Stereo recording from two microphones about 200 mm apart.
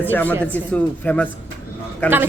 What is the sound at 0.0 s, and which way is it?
A woman's voice, 10° left (ahead or behind).